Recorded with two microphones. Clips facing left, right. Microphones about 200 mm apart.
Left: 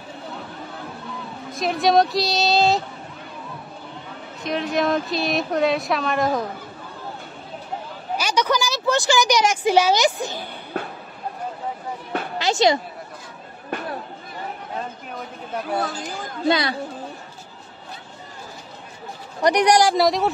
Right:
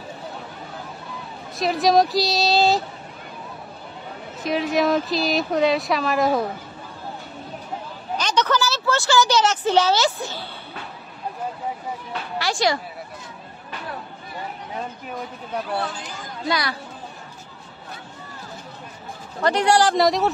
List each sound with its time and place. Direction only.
1.5 s speech: centre (ahead or behind)
4.4 s speech: 5° right (ahead or behind)
8.2 s a woman's voice: 10° left (ahead or behind)
12.4 s speech: 20° left (ahead or behind)
15.8 s speech: 40° left (ahead or behind)
16.4 s a woman's voice: 25° left (ahead or behind)
19.4 s a woman's voice: 15° left (ahead or behind)
20.0 s speech: centre (ahead or behind)